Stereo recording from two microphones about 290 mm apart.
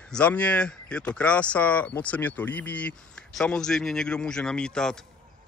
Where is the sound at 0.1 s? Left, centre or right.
Centre.